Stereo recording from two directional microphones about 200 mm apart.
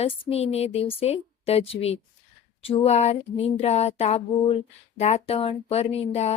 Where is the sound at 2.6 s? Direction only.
30° left (ahead or behind).